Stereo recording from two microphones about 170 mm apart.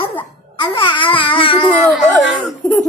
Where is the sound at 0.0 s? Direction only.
30° left (ahead or behind).